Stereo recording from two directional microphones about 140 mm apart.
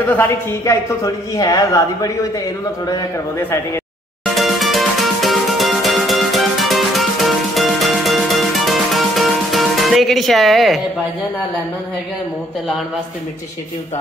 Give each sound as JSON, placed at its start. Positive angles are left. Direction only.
{"t": 0.1, "sound": "a woman's voice", "side_deg": 15}
{"t": 4.4, "sound": "music", "side_deg": 0}